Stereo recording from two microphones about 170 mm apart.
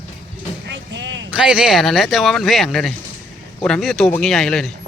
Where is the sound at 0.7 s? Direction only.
90° right.